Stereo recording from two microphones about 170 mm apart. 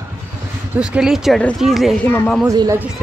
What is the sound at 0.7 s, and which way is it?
Speech, 5° right (ahead or behind).